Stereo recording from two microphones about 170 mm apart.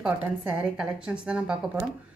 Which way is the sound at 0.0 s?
5° right (ahead or behind).